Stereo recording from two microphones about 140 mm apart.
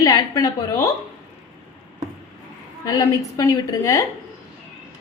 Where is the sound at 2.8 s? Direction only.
25° left (ahead or behind).